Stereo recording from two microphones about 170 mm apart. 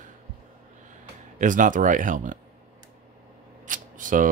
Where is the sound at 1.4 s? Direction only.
50° right (ahead or behind).